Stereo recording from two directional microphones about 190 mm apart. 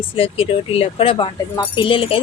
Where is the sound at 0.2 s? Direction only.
30° left (ahead or behind).